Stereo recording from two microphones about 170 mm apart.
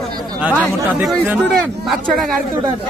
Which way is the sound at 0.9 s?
10° right (ahead or behind).